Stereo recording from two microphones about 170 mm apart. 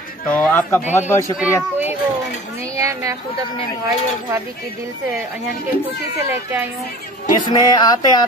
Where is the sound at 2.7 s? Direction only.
20° right (ahead or behind).